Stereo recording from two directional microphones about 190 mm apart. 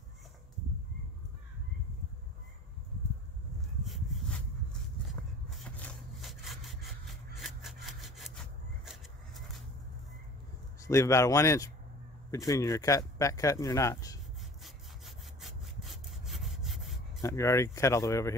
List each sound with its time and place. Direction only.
3.8 s a sound: centre (ahead or behind)
5.6 s wood: 5° left (ahead or behind)
7.3 s sawing: centre (ahead or behind)
10.8 s a man's voice: 15° left (ahead or behind)
14.6 s sawing: centre (ahead or behind)
17.2 s speech: 15° left (ahead or behind)